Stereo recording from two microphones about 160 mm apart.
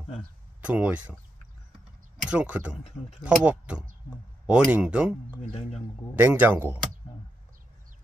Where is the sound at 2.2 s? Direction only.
5° right (ahead or behind).